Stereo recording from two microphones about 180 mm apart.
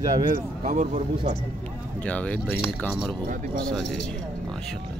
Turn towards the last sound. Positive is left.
turn(degrees=5)  # may be behind; listen again after turning